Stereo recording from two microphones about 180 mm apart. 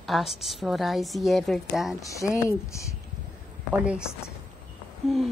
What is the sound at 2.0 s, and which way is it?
Speech, 20° left (ahead or behind).